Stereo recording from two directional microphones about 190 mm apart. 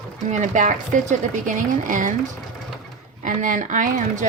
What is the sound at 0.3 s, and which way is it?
Speech, 40° right (ahead or behind).